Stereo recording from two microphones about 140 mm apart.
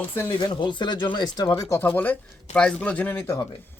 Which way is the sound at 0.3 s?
30° left (ahead or behind).